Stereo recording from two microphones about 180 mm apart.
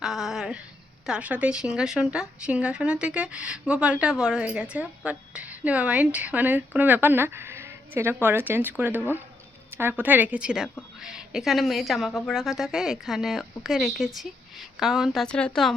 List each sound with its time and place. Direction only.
0.0 s a sound: 5° right (ahead or behind)
1.0 s a woman's voice: 5° right (ahead or behind)
10.0 s a woman's voice: 10° right (ahead or behind)